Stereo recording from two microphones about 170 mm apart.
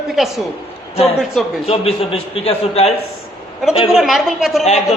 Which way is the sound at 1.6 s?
35° left (ahead or behind).